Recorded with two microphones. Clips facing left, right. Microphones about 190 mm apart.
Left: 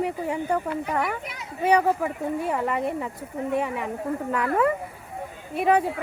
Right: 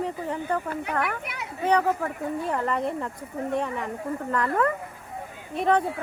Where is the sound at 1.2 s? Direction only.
65° right (ahead or behind).